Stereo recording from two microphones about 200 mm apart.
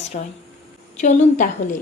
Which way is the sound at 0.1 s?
30° left (ahead or behind).